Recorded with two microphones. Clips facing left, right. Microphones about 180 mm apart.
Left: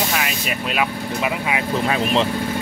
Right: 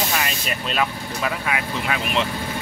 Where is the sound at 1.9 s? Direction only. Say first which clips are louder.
Left 3 dB; 35° left (ahead or behind).